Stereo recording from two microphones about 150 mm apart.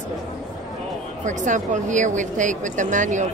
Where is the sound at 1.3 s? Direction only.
55° right (ahead or behind).